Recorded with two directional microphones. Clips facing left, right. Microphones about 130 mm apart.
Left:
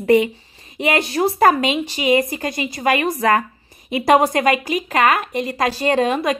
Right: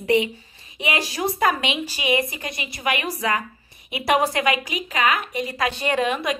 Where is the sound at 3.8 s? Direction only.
40° left (ahead or behind).